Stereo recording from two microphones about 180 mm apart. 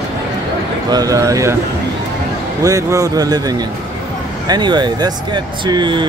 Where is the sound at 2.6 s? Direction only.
20° right (ahead or behind).